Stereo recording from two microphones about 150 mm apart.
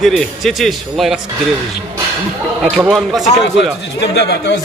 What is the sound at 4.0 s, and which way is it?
Speech, 90° left.